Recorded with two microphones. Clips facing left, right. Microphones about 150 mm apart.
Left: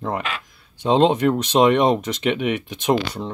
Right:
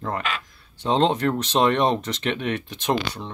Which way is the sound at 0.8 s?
15° left (ahead or behind).